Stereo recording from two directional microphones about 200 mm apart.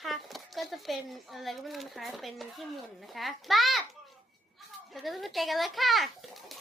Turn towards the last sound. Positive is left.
turn(degrees=0)  # may be behind; listen again after turning